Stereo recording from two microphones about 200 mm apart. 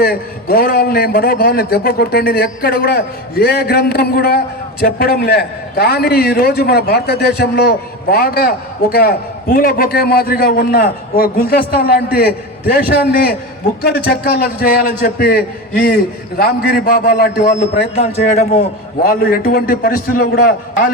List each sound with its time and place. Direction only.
0.0 s a man's voice: 50° left (ahead or behind)
17.9 s speech: 35° left (ahead or behind)
19.0 s a man's voice: 45° left (ahead or behind)